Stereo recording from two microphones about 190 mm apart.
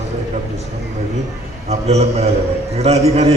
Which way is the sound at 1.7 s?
35° right (ahead or behind).